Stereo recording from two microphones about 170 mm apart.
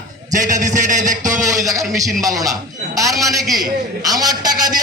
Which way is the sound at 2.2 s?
20° right (ahead or behind).